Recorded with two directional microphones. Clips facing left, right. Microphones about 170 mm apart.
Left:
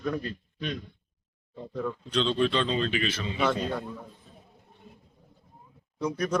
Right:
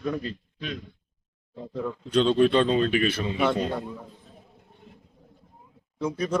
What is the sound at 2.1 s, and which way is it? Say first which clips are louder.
A man's voice: right 6 dB; 50° right (ahead or behind).